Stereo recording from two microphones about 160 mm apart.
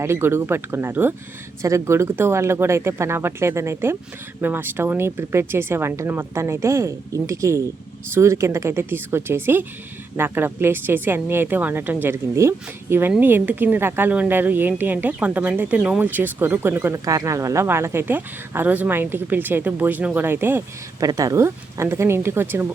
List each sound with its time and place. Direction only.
0.0 s speech: 15° right (ahead or behind)